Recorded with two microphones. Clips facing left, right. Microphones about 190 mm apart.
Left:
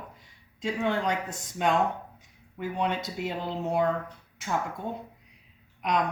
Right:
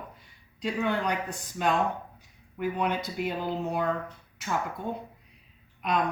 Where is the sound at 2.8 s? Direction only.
25° left (ahead or behind).